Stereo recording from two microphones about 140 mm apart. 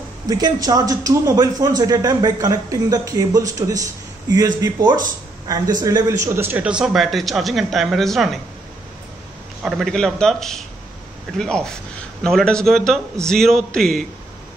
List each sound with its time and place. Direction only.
0.3 s a man's voice: 25° right (ahead or behind); by 8.4 s centre (ahead or behind)
9.6 s speech: 5° right (ahead or behind)